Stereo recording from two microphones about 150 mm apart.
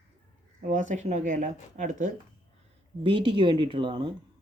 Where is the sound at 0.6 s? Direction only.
55° right (ahead or behind).